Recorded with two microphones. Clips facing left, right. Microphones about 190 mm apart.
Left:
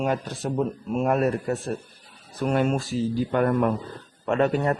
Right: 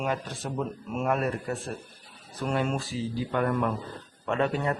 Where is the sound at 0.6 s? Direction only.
40° left (ahead or behind).